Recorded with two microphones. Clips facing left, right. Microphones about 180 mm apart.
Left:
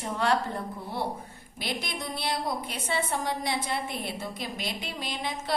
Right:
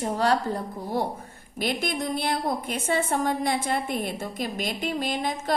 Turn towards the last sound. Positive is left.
turn(degrees=-45)  # may be behind; listen again after turning